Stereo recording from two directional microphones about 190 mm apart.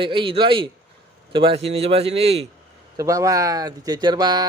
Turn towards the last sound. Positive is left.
turn(degrees=-20)  # may be behind; listen again after turning